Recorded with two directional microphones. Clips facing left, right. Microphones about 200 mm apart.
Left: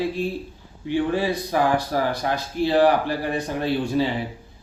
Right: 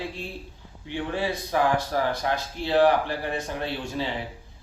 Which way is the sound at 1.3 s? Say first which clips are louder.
Left 3 dB; 10° left (ahead or behind).